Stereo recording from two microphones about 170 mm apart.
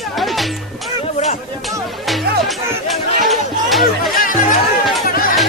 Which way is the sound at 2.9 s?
Centre (ahead or behind).